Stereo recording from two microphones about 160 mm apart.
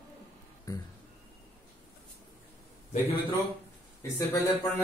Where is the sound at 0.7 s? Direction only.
20° left (ahead or behind).